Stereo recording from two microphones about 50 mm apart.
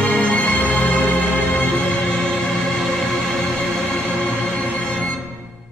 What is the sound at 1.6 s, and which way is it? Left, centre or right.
Music, centre.